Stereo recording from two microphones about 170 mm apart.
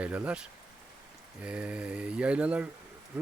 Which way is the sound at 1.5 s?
5° right (ahead or behind).